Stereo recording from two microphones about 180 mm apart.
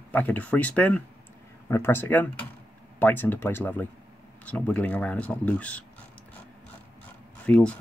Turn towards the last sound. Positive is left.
turn(degrees=5)  # may be behind; listen again after turning